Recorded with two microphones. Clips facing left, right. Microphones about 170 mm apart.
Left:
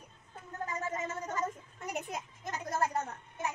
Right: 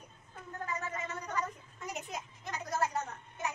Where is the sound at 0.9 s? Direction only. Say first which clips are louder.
Left 1 dB; 45° left (ahead or behind).